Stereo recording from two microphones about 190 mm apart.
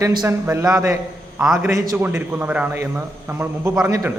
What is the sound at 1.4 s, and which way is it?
A man's voice, 5° right (ahead or behind).